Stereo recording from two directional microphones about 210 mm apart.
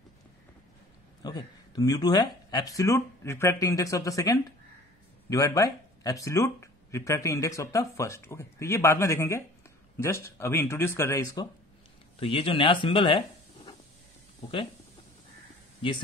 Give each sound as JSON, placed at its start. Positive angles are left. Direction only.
{"t": 1.2, "sound": "speech", "side_deg": 20}
{"t": 12.2, "sound": "speech", "side_deg": 25}